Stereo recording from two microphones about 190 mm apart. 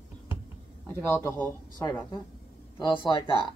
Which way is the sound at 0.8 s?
10° left (ahead or behind).